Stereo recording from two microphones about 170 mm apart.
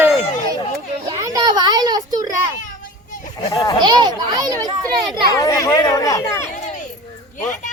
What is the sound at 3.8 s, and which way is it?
A child's voice, 25° right (ahead or behind).